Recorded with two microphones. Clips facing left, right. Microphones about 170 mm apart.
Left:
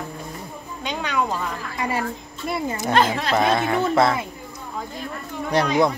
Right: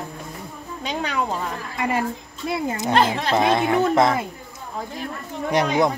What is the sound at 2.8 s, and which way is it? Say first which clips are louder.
Speech: even; 20° right (ahead or behind).